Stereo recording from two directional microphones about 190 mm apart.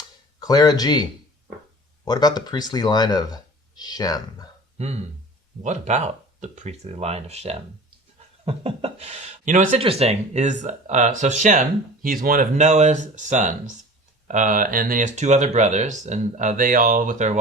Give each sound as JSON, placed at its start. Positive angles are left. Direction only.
{"t": 0.3, "sound": "speech", "side_deg": 20}
{"t": 2.0, "sound": "speech", "side_deg": 20}
{"t": 5.6, "sound": "speech", "side_deg": -35}
{"t": 9.8, "sound": "speech", "side_deg": -30}